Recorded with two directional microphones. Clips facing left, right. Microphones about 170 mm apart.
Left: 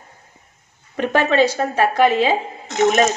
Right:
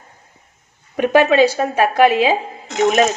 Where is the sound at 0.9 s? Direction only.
10° right (ahead or behind).